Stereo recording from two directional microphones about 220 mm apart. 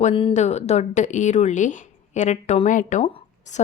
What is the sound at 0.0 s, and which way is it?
Speech, 25° left (ahead or behind).